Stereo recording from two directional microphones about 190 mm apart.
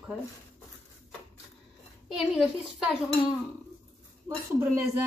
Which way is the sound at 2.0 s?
5° right (ahead or behind).